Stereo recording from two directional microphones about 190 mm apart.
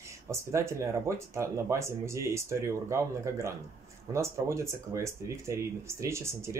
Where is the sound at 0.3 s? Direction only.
15° right (ahead or behind).